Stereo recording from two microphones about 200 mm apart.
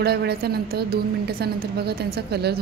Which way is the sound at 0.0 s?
55° right (ahead or behind).